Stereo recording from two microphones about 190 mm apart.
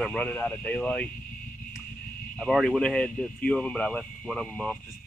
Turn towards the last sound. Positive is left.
turn(degrees=5)  # may be behind; listen again after turning